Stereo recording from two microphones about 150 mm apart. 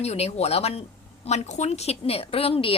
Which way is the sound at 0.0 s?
45° left (ahead or behind).